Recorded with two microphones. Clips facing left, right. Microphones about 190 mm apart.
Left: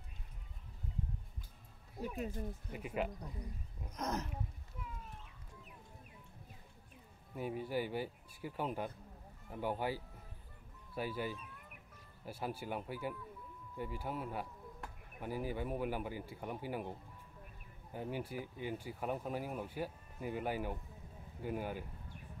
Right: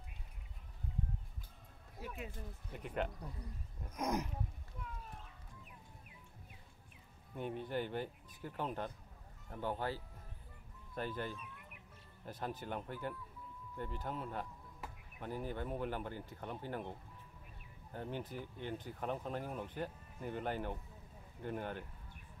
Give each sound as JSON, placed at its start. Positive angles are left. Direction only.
{"t": 2.1, "sound": "speech", "side_deg": 40}
{"t": 2.7, "sound": "speech", "side_deg": 5}
{"t": 3.9, "sound": "speech", "side_deg": -10}
{"t": 7.3, "sound": "speech", "side_deg": 5}